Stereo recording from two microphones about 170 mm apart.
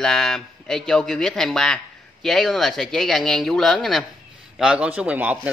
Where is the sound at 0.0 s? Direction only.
5° left (ahead or behind).